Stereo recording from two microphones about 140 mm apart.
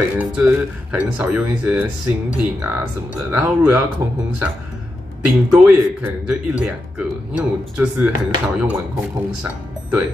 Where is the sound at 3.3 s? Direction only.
10° right (ahead or behind).